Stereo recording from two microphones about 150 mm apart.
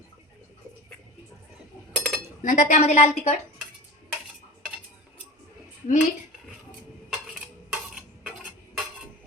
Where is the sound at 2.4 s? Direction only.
55° left (ahead or behind).